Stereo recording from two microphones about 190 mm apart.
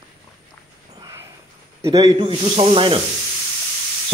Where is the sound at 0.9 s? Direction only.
20° right (ahead or behind).